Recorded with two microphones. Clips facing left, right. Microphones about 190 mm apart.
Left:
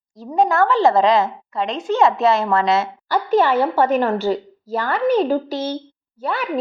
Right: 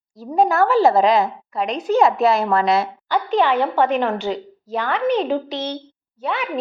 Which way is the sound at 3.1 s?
15° right (ahead or behind).